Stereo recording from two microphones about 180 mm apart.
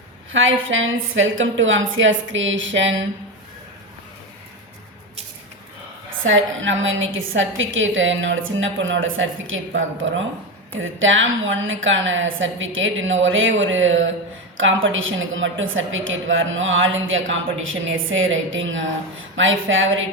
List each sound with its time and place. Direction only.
0.3 s a woman's voice: 90° right
6.2 s a woman's voice: 90° right